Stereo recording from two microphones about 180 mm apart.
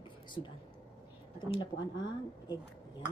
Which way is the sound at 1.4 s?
25° left (ahead or behind).